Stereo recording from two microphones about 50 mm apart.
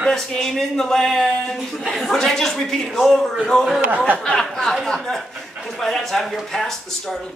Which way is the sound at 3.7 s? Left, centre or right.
Right.